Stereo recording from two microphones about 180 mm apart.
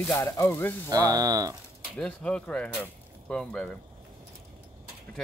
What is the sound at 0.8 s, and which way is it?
Speech, 20° right (ahead or behind).